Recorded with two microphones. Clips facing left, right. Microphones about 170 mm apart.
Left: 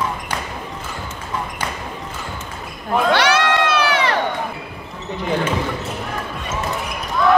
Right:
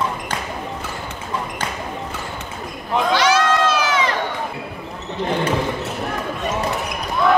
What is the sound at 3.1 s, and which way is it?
Crowd, 65° left (ahead or behind).